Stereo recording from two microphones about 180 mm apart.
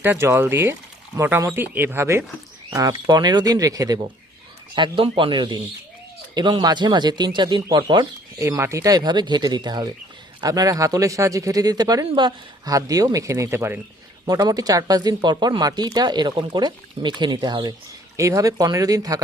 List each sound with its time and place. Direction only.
0.0 s speech: 10° right (ahead or behind)